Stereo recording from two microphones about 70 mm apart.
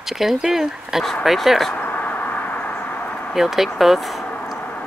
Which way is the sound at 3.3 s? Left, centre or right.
Centre.